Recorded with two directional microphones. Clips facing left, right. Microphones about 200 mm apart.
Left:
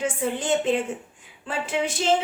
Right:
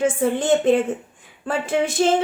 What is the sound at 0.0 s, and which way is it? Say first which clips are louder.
Speech: right 6 dB; 50° right (ahead or behind).